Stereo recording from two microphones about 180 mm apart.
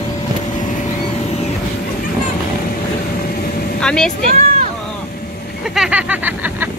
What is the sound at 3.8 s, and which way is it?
Speech, 5° left (ahead or behind).